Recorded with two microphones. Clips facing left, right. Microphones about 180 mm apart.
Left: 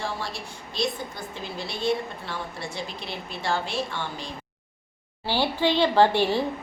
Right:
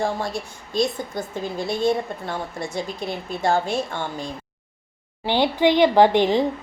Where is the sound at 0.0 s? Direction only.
45° right (ahead or behind).